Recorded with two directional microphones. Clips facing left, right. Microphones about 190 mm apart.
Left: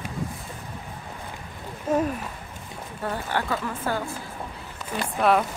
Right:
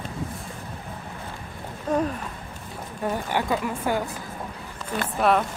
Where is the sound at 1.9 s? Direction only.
5° left (ahead or behind).